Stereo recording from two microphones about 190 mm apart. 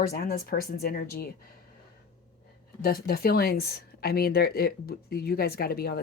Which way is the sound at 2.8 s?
55° left (ahead or behind).